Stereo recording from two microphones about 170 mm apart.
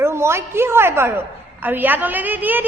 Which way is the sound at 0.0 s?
15° right (ahead or behind).